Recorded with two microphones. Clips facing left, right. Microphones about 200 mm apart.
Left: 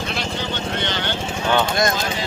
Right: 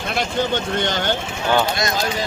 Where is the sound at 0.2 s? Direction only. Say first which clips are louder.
Right 5 dB; 45° right (ahead or behind).